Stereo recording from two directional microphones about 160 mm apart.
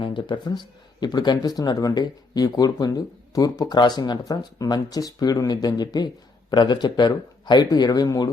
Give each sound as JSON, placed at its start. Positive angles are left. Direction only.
{"t": 0.0, "sound": "speech", "side_deg": 30}